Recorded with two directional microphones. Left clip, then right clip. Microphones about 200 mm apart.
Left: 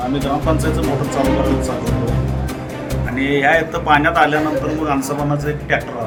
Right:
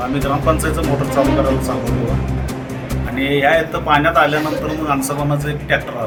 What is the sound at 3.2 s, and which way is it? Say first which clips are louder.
A man's voice: even; centre (ahead or behind).